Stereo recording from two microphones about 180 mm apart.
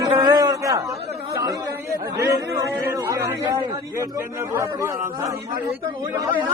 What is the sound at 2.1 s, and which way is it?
A man's voice, 15° right (ahead or behind).